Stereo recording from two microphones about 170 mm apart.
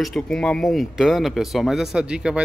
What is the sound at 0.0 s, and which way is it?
Speech, 5° left (ahead or behind).